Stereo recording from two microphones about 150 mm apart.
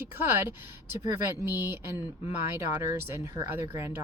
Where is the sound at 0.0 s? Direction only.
15° right (ahead or behind).